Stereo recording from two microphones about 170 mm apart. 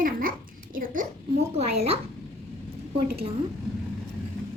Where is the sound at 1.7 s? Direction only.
35° right (ahead or behind).